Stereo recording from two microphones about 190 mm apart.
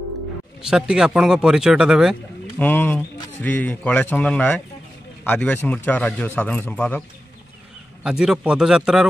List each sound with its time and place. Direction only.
0.6 s speech: 5° right (ahead or behind)
2.6 s a man's voice: 10° left (ahead or behind)
8.0 s speech: 5° right (ahead or behind)